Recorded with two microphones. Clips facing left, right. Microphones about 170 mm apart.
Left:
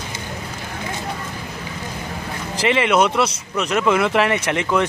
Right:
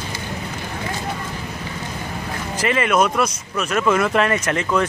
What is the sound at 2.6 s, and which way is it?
Speech, 20° left (ahead or behind).